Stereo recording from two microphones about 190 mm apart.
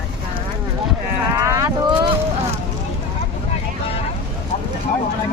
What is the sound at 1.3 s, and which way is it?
Speech, 15° right (ahead or behind).